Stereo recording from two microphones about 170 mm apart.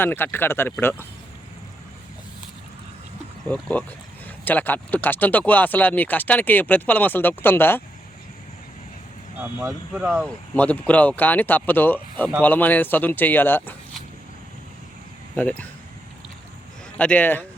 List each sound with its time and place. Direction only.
0.0 s speech: 10° left (ahead or behind)
3.5 s speech: 10° left (ahead or behind)
9.4 s speech: 10° right (ahead or behind)
10.5 s speech: 10° left (ahead or behind)
15.4 s speech: 10° left (ahead or behind)
17.0 s speech: 10° left (ahead or behind)